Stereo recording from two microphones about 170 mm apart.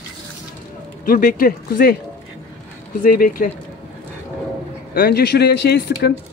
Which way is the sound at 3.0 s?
55° left (ahead or behind).